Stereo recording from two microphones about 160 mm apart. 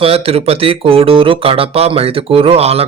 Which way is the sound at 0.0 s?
35° right (ahead or behind).